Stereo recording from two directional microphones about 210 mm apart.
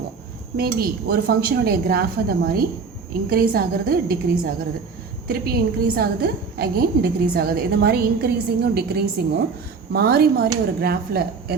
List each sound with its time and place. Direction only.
0.5 s a woman's voice: 45° right (ahead or behind)